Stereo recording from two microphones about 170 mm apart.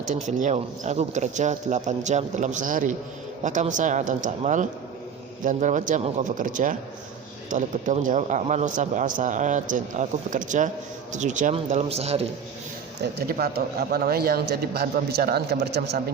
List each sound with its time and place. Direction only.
0.1 s speech: 45° right (ahead or behind)
13.0 s speech: 70° right (ahead or behind)